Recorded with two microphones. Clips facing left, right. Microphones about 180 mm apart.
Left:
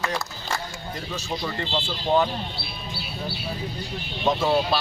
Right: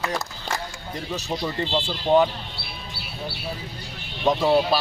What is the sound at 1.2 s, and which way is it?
Speech, 20° right (ahead or behind).